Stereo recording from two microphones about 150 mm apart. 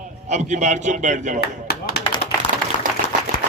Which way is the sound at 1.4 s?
90° left.